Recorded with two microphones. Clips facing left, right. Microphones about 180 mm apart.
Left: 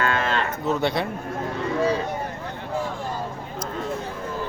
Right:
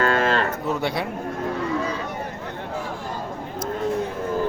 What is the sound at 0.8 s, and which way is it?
Speech, 10° right (ahead or behind).